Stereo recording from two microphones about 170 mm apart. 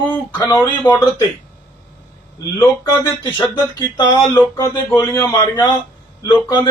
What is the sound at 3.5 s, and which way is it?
Speech, 25° left (ahead or behind).